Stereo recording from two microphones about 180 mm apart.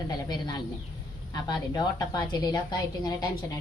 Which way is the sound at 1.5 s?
20° left (ahead or behind).